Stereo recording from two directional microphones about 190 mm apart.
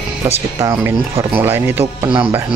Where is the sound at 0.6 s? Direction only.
15° right (ahead or behind).